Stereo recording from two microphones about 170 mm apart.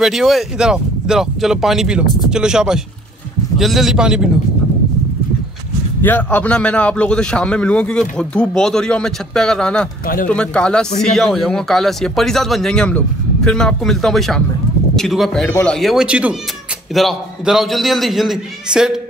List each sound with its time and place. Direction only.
0.0 s a man's voice: centre (ahead or behind)
6.0 s a man's voice: 10° left (ahead or behind)
10.0 s speech: 55° left (ahead or behind)
10.3 s a man's voice: 5° left (ahead or behind)